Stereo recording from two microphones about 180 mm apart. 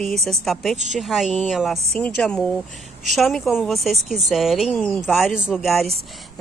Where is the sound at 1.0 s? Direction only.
Centre (ahead or behind).